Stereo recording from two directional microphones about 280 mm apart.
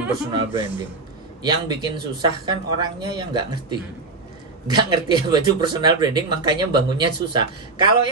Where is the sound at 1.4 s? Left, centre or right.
Centre.